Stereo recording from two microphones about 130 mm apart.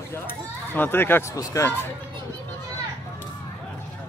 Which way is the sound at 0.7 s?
15° left (ahead or behind).